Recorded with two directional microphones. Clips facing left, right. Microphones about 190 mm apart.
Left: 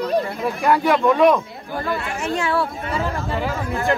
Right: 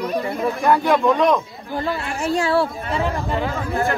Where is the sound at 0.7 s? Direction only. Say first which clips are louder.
Even; 10° left (ahead or behind).